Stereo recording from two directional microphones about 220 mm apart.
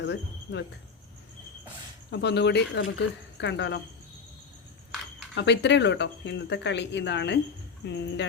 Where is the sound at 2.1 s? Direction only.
50° left (ahead or behind).